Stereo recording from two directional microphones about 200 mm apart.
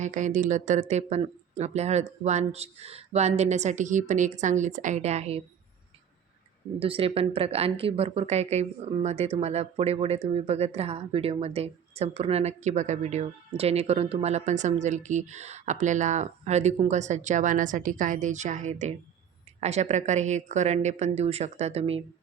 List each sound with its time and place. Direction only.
0.0 s speech: 40° right (ahead or behind)
6.7 s speech: 30° right (ahead or behind)